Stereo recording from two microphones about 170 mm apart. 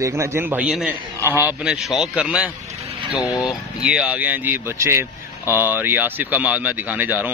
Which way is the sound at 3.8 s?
5° right (ahead or behind).